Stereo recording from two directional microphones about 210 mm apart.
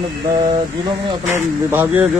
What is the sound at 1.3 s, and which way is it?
Speech, 10° right (ahead or behind).